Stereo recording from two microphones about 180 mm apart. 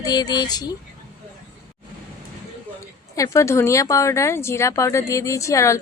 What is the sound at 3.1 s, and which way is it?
Speech, 20° left (ahead or behind).